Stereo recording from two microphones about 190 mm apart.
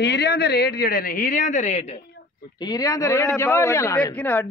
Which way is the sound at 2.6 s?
20° left (ahead or behind).